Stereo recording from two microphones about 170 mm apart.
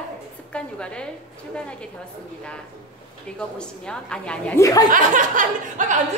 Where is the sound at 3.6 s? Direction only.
5° left (ahead or behind).